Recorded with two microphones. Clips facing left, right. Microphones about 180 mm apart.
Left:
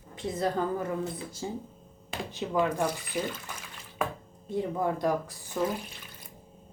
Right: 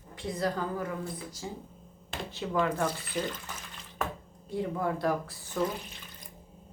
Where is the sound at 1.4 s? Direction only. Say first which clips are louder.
Left 5 dB; 30° left (ahead or behind).